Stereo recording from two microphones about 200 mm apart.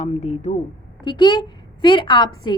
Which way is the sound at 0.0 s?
35° left (ahead or behind).